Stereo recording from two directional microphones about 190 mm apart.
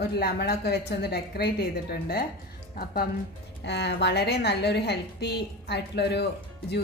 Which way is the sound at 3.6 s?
65° left (ahead or behind).